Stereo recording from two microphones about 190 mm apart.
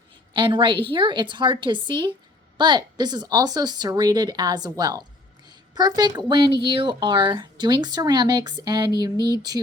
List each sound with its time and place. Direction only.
0.3 s speech: 25° right (ahead or behind)